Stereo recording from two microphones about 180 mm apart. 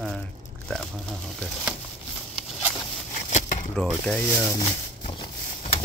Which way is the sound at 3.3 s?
40° left (ahead or behind).